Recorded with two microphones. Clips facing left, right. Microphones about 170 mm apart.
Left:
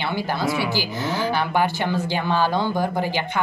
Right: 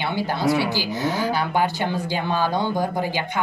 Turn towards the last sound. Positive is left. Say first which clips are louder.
# left 1 dB
turn(degrees=-15)  # may be behind; listen again after turning